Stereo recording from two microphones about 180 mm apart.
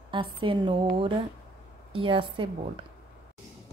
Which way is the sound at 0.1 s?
30° right (ahead or behind).